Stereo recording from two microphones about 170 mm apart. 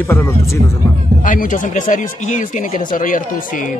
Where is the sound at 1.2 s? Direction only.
50° left (ahead or behind).